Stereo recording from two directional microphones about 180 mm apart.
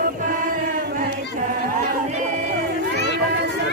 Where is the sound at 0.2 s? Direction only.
50° right (ahead or behind).